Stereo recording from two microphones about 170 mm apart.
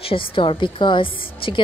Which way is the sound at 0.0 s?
30° left (ahead or behind).